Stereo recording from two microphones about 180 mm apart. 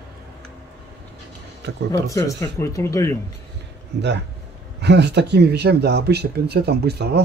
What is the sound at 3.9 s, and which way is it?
Speech, 70° right (ahead or behind).